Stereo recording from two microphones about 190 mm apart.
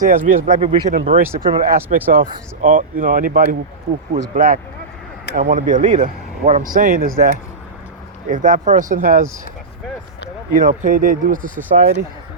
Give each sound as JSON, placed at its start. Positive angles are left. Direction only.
{"t": 0.0, "sound": "speech", "side_deg": -45}
{"t": 8.3, "sound": "speech", "side_deg": -40}
{"t": 10.6, "sound": "speech", "side_deg": -45}